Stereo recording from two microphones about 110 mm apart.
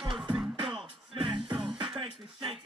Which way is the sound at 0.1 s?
10° right (ahead or behind).